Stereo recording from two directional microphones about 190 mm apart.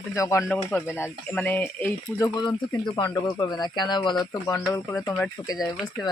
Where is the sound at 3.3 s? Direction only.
20° left (ahead or behind).